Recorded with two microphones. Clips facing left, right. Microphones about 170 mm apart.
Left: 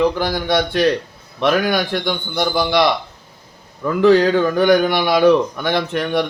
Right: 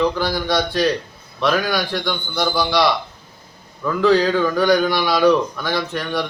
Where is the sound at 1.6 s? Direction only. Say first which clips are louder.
Left 3 dB; 50° left (ahead or behind).